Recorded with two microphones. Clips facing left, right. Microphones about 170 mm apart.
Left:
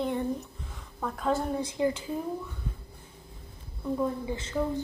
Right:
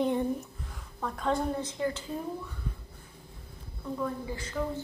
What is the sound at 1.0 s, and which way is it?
A woman's voice, 5° left (ahead or behind).